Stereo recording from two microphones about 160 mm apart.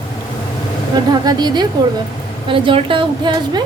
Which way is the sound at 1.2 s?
25° right (ahead or behind).